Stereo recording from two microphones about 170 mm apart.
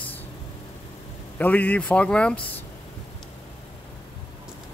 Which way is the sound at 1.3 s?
10° left (ahead or behind).